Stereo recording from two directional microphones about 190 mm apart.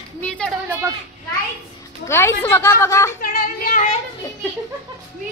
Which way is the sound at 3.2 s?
45° left (ahead or behind).